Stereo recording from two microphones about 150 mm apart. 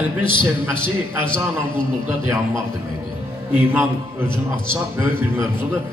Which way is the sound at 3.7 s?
15° right (ahead or behind).